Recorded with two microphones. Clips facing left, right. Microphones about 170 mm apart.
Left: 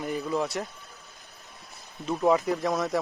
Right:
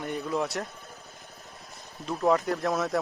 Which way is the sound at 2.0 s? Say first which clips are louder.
Left 1 dB; centre (ahead or behind).